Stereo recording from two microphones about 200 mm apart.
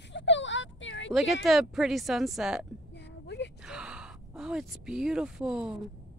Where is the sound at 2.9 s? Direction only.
60° left (ahead or behind).